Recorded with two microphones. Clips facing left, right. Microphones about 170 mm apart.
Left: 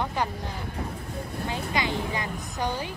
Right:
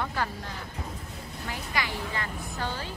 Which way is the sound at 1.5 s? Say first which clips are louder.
Left 4 dB; 20° left (ahead or behind).